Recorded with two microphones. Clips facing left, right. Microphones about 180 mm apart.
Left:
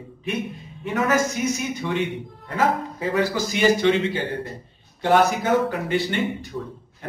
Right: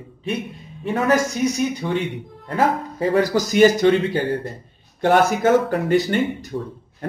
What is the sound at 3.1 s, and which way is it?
Speech, 40° right (ahead or behind).